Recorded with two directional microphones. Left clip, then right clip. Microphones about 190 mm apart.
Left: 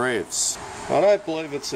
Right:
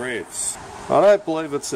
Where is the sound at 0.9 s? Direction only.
20° right (ahead or behind).